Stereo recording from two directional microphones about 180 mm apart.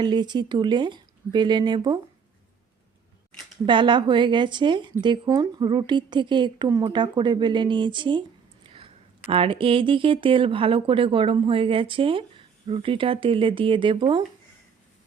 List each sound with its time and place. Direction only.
0.0 s speech: 25° right (ahead or behind)
3.7 s speech: 25° right (ahead or behind)